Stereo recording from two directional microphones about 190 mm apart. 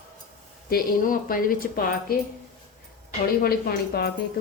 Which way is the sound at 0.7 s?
50° left (ahead or behind).